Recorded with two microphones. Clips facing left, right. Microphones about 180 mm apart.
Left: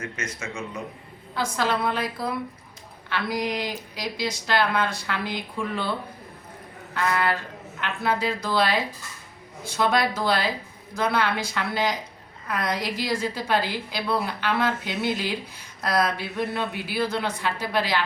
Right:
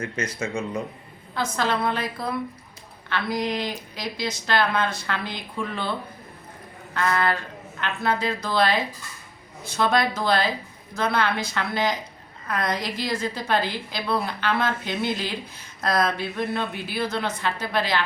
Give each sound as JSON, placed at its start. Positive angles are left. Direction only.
{"t": 0.0, "sound": "speech", "side_deg": -35}
{"t": 1.4, "sound": "a woman's voice", "side_deg": 10}
{"t": 6.9, "sound": "a woman's voice", "side_deg": 10}